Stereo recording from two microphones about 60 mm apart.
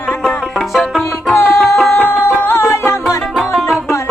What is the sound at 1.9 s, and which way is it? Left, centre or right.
Music, left.